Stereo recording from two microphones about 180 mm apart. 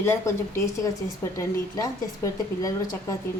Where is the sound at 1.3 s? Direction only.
20° left (ahead or behind).